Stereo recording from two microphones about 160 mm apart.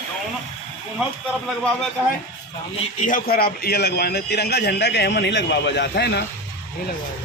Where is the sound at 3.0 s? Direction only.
60° left (ahead or behind); by 6.2 s 90° left.